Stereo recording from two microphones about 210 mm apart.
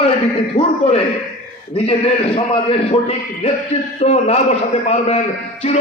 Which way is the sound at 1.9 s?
30° left (ahead or behind).